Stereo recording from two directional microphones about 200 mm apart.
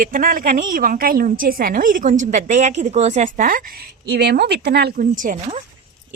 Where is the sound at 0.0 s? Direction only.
45° right (ahead or behind).